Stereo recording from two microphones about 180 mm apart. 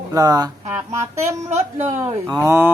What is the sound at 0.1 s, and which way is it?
Speech, 20° right (ahead or behind).